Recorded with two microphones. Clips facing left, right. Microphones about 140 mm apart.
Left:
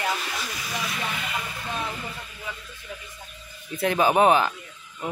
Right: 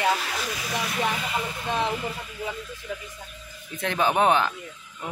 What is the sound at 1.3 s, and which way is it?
Speech, 25° right (ahead or behind).